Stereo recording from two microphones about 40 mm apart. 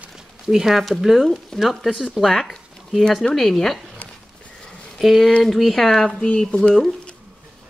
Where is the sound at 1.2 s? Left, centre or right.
Centre.